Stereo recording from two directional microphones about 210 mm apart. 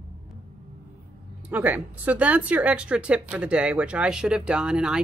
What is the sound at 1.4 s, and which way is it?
Speech, 10° right (ahead or behind).